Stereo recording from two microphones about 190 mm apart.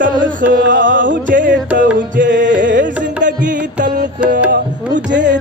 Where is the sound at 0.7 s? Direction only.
75° right (ahead or behind).